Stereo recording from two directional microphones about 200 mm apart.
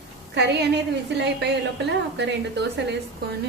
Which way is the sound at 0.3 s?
60° right (ahead or behind).